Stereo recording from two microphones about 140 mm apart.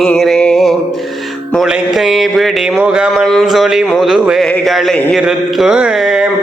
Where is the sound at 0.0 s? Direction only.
Centre (ahead or behind).